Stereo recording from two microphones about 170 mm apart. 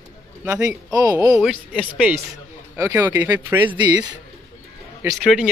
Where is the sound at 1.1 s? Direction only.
20° right (ahead or behind).